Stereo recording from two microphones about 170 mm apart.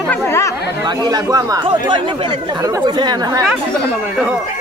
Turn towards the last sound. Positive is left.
turn(degrees=-25)  # may be behind; listen again after turning